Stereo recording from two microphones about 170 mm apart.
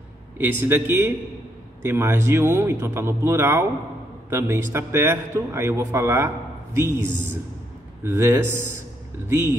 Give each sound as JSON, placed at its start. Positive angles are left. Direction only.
{"t": 0.4, "sound": "a man's voice", "side_deg": -15}